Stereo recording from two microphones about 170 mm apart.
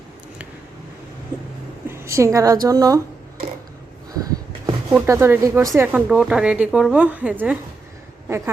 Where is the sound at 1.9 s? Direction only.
15° right (ahead or behind).